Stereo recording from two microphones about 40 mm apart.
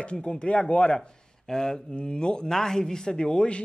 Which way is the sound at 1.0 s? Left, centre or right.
Centre.